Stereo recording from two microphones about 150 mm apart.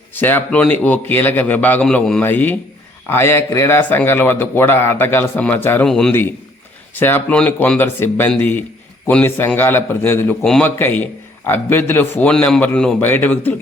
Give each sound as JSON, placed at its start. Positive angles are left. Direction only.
{"t": 0.1, "sound": "a man's voice", "side_deg": 15}
{"t": 10.4, "sound": "a man's voice", "side_deg": 5}
{"t": 10.8, "sound": "a man's voice", "side_deg": 15}